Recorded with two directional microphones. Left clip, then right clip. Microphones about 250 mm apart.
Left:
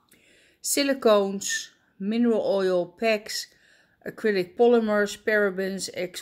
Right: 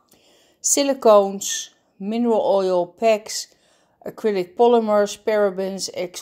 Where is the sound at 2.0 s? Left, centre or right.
Centre.